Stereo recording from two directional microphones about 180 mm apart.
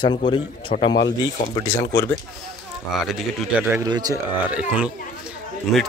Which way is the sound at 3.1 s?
5° right (ahead or behind).